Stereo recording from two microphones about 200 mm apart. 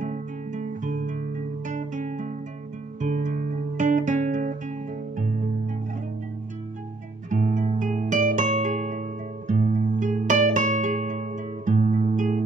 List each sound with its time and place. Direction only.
0.0 s music: 40° right (ahead or behind)
3.0 s guitar: 40° right (ahead or behind)
7.2 s music: 40° right (ahead or behind)